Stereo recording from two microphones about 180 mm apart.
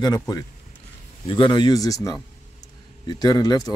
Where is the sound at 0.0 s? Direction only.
20° left (ahead or behind).